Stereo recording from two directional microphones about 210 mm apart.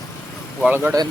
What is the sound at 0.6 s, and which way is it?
Speech, 5° right (ahead or behind).